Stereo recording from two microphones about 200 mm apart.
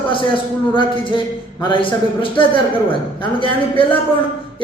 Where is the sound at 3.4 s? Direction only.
25° left (ahead or behind).